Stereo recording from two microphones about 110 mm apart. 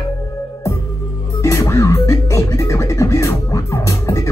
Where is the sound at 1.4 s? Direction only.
25° left (ahead or behind).